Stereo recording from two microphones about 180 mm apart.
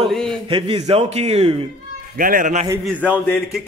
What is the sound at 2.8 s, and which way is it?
Speech, 10° left (ahead or behind).